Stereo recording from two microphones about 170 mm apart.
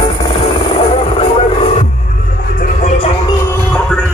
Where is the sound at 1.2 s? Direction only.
30° left (ahead or behind).